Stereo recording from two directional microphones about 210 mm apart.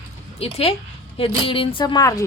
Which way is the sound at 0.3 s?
30° left (ahead or behind).